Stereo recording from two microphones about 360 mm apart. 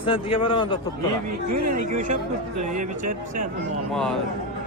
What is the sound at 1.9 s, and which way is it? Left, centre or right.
Speech, right.